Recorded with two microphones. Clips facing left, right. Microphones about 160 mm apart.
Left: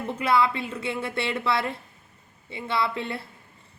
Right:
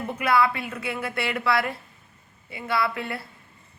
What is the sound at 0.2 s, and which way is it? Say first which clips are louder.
Speech: right 1 dB; 25° left (ahead or behind).